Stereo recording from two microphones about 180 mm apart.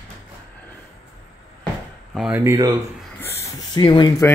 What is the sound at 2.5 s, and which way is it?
Speech, 15° right (ahead or behind).